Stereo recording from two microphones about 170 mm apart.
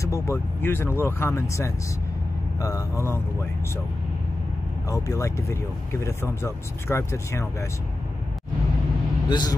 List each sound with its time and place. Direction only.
0.0 s speech: 15° left (ahead or behind)
4.8 s speech: 20° left (ahead or behind)
9.3 s speech: 25° left (ahead or behind)